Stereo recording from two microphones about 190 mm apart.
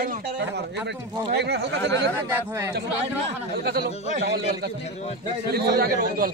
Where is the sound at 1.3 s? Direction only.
60° right (ahead or behind).